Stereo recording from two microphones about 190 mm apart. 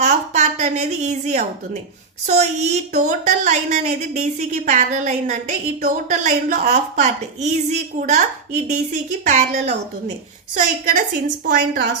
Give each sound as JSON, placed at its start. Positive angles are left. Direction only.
{"t": 0.0, "sound": "a woman's voice", "side_deg": -40}